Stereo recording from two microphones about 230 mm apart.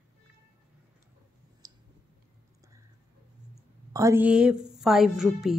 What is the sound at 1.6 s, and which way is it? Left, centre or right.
Clicking, centre.